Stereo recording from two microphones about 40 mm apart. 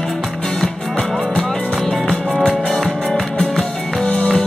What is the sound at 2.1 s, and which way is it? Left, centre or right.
Music, centre.